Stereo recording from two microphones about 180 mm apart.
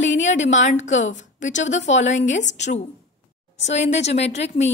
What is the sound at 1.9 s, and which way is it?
Speech, 90° left.